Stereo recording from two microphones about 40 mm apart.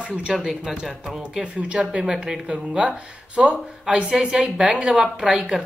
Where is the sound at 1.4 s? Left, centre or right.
Right.